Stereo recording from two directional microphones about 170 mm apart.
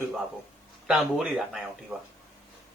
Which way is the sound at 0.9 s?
5° right (ahead or behind).